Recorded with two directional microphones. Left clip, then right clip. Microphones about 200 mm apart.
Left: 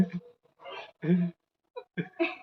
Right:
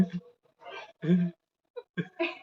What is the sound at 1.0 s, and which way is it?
Sigh, 20° right (ahead or behind).